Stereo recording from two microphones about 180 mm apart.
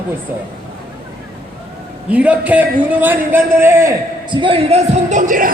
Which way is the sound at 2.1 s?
10° right (ahead or behind).